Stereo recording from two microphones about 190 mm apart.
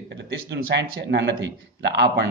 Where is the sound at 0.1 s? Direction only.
65° right (ahead or behind).